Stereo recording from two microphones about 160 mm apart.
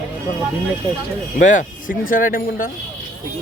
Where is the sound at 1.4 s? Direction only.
50° left (ahead or behind).